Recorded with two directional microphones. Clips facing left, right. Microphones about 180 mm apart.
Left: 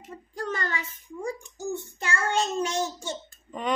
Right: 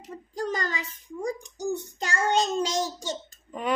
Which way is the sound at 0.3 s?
35° right (ahead or behind).